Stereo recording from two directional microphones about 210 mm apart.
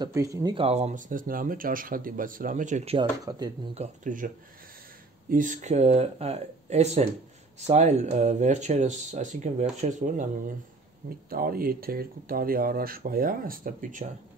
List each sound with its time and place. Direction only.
0.0 s speech: 15° right (ahead or behind)
3.3 s speech: 15° right (ahead or behind)
3.7 s speech: 35° right (ahead or behind)
5.3 s speech: 35° right (ahead or behind)